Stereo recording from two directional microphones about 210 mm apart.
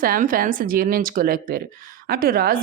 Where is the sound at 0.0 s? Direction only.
40° right (ahead or behind).